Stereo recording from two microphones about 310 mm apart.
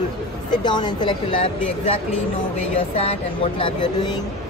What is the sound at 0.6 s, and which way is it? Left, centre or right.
Speech, centre.